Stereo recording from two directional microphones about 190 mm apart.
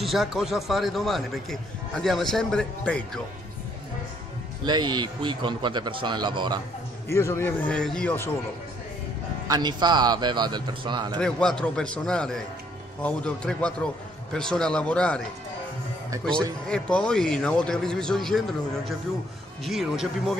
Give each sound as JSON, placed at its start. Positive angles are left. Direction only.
{"t": 0.0, "sound": "a man's voice", "side_deg": 0}
{"t": 4.6, "sound": "speech", "side_deg": -20}
{"t": 7.1, "sound": "a man's voice", "side_deg": 15}
{"t": 9.5, "sound": "speech", "side_deg": -20}
{"t": 11.1, "sound": "a man's voice", "side_deg": 5}
{"t": 16.6, "sound": "a man's voice", "side_deg": 5}
{"t": 19.6, "sound": "a man's voice", "side_deg": 0}